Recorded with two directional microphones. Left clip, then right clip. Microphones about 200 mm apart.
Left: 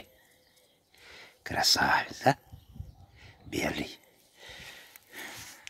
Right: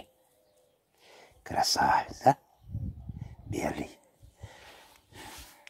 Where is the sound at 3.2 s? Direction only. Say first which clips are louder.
Left 1 dB; centre (ahead or behind).